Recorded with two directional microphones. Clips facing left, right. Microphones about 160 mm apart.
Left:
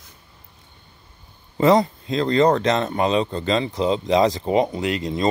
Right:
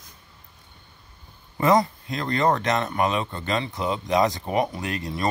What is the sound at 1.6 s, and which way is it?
Speech, 25° left (ahead or behind).